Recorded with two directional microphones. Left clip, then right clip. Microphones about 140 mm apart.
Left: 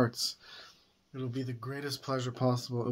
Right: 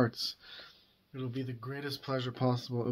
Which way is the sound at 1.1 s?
40° left (ahead or behind).